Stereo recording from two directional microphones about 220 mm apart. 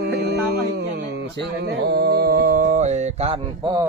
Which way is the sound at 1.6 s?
45° right (ahead or behind).